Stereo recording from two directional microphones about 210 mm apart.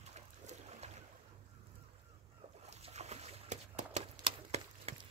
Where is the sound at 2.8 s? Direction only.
30° right (ahead or behind).